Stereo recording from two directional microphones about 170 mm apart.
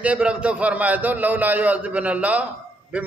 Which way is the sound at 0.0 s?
5° right (ahead or behind).